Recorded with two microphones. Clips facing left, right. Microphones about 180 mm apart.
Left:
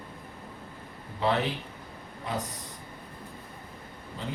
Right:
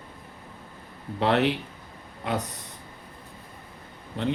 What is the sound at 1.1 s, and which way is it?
Speech, 70° right (ahead or behind).